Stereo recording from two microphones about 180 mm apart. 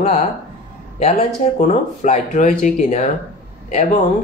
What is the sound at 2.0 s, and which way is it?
Speech, 45° left (ahead or behind).